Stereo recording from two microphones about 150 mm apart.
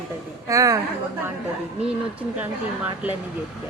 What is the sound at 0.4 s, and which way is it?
Speech, 20° right (ahead or behind).